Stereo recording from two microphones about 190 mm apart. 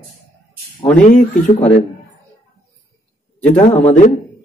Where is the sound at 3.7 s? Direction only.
40° left (ahead or behind).